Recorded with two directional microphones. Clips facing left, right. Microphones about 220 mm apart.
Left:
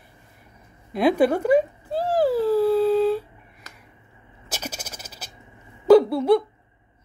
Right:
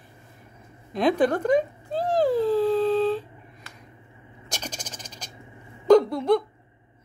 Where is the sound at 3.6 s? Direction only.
40° left (ahead or behind).